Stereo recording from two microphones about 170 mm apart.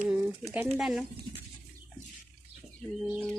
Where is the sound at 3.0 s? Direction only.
Centre (ahead or behind).